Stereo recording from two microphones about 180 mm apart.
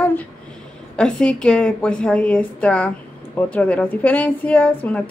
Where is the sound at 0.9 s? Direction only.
5° left (ahead or behind).